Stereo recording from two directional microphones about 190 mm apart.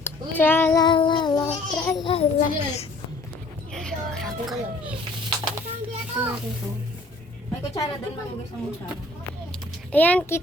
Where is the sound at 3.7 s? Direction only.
Centre (ahead or behind).